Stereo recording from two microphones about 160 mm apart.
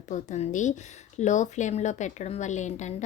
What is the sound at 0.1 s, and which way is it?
A woman's voice, 50° left (ahead or behind).